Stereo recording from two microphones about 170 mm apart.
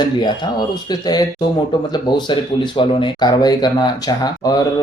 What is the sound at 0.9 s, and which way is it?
Speech, 25° left (ahead or behind).